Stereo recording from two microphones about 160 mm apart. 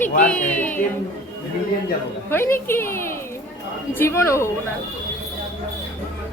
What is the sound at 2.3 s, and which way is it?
Speech, 15° left (ahead or behind).